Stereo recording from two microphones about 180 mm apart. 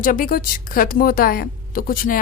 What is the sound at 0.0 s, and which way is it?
A woman's voice, 50° left (ahead or behind).